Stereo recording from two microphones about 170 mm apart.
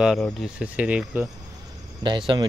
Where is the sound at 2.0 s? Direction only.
30° right (ahead or behind).